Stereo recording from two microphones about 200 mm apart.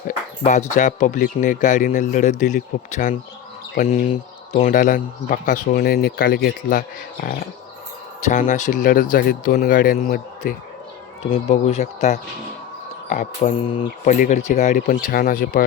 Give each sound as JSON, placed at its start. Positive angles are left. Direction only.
{"t": 0.4, "sound": "a man's voice", "side_deg": 35}
{"t": 3.8, "sound": "speech", "side_deg": 30}
{"t": 4.7, "sound": "speech", "side_deg": 40}
{"t": 8.2, "sound": "speech", "side_deg": 40}
{"t": 11.3, "sound": "a man's voice", "side_deg": 30}
{"t": 13.7, "sound": "speech", "side_deg": 25}
{"t": 14.1, "sound": "a man's voice", "side_deg": 40}